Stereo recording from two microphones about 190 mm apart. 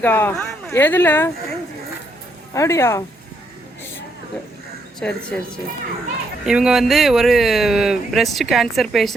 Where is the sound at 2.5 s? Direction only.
15° left (ahead or behind).